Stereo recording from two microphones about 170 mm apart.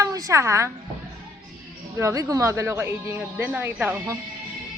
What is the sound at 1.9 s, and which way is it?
Speech, 20° right (ahead or behind).